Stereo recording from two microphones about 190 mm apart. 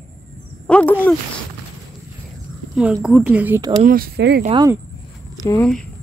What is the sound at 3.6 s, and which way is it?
Speech, 20° right (ahead or behind).